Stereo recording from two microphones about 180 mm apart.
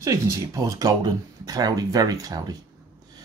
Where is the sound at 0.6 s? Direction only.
20° right (ahead or behind).